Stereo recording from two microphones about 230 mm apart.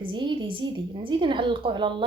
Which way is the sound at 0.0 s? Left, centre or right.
Centre.